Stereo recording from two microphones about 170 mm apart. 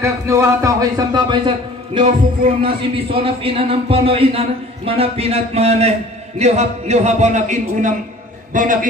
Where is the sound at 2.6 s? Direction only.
35° right (ahead or behind).